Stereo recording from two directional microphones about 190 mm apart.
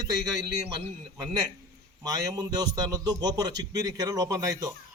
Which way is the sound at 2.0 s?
20° right (ahead or behind).